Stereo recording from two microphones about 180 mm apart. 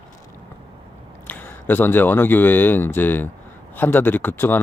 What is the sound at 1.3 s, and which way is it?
Speech, 10° left (ahead or behind).